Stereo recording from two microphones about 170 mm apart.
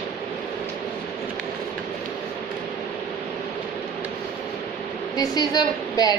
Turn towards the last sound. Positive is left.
turn(degrees=20)  # may be behind; listen again after turning